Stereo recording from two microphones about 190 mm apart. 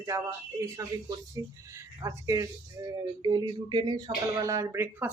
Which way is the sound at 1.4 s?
20° right (ahead or behind).